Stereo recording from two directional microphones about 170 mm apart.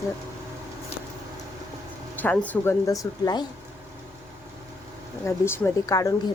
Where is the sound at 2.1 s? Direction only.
10° left (ahead or behind).